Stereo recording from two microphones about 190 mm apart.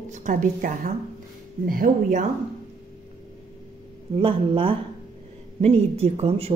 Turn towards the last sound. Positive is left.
turn(degrees=-30)  # may be behind; listen again after turning